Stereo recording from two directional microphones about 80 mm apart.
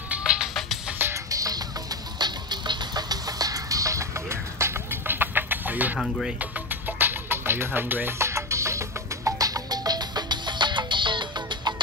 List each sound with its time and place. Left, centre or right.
0.1 s music: centre
0.9 s music: right
1.3 s music: right
2.1 s music: right